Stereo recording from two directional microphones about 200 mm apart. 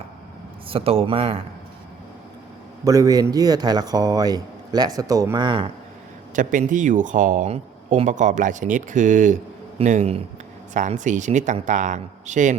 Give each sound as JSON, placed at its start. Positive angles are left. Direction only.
{"t": 0.7, "sound": "a man's voice", "side_deg": -30}
{"t": 2.8, "sound": "a man's voice", "side_deg": -15}
{"t": 6.3, "sound": "speech", "side_deg": -40}